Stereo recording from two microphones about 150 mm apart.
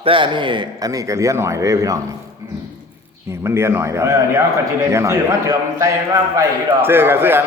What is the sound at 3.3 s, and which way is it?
A man's voice, 15° right (ahead or behind).